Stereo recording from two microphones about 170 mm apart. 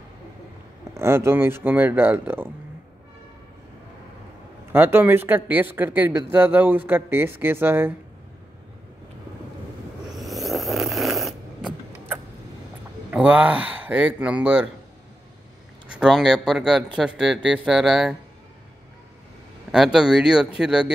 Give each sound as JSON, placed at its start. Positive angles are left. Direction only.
{"t": 0.9, "sound": "speech", "side_deg": -15}
{"t": 4.7, "sound": "speech", "side_deg": -10}
{"t": 10.1, "sound": "snoring", "side_deg": 0}
{"t": 13.1, "sound": "speech", "side_deg": -10}
{"t": 15.9, "sound": "speech", "side_deg": -5}
{"t": 19.7, "sound": "speech", "side_deg": -5}